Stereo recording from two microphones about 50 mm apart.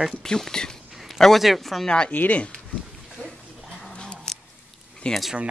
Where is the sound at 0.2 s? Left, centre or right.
Centre.